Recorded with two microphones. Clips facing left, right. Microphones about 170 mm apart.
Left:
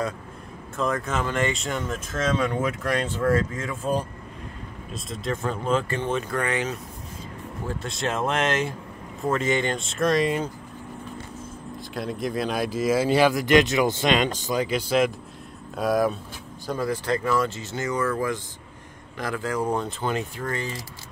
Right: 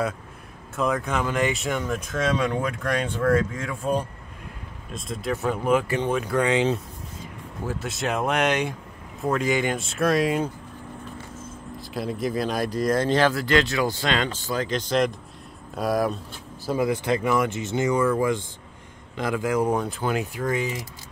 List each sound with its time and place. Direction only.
0.7 s speech: centre (ahead or behind)
5.1 s speech: 5° right (ahead or behind); by 6.8 s 20° right (ahead or behind)
7.6 s speech: 5° right (ahead or behind)
11.9 s speech: centre (ahead or behind)
16.6 s speech: 15° right (ahead or behind)